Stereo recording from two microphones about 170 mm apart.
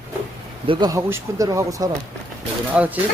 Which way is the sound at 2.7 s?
10° right (ahead or behind).